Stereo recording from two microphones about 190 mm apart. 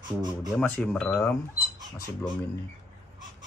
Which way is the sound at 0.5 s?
10° left (ahead or behind).